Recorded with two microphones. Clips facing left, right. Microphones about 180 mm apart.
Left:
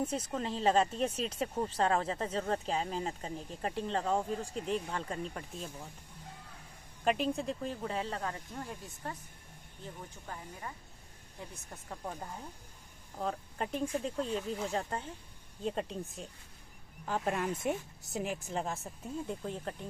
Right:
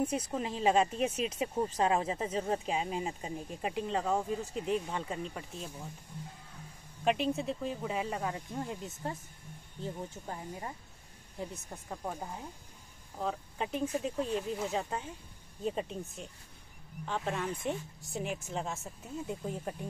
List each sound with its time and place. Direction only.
0.0 s speech: 10° right (ahead or behind)
7.1 s speech: centre (ahead or behind); by 9.2 s 25° right (ahead or behind)
10.2 s speech: 25° right (ahead or behind)
11.7 s speech: 10° right (ahead or behind)